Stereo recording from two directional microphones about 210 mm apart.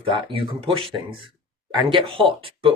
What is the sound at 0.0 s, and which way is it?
Speech, 25° right (ahead or behind).